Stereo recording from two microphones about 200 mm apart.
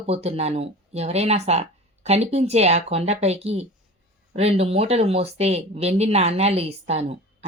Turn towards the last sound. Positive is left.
turn(degrees=-30)  # may be behind; listen again after turning